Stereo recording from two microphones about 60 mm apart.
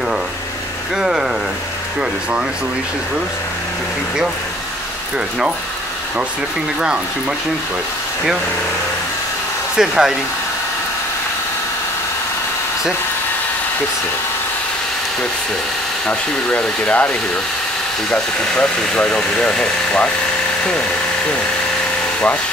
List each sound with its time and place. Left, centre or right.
0.9 s speech: centre
9.8 s speech: centre
16.1 s speech: left
18.1 s speech: centre